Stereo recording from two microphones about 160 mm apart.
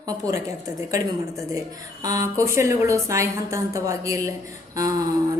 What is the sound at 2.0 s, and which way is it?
A man's voice, 20° right (ahead or behind).